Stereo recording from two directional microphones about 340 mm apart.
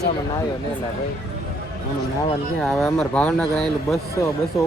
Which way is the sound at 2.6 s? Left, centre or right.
Centre.